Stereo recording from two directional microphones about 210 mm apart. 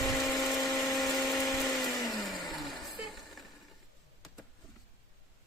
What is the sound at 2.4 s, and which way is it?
Vehicle, centre (ahead or behind).